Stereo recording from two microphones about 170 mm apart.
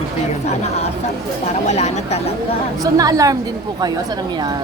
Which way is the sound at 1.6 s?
40° left (ahead or behind).